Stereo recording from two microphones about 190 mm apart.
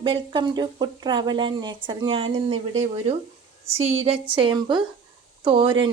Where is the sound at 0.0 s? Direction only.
25° right (ahead or behind).